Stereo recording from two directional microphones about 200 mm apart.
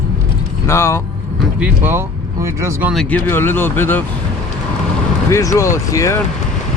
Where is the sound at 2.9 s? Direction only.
5° left (ahead or behind).